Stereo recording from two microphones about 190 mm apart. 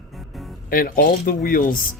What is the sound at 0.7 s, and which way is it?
Speech, 50° left (ahead or behind).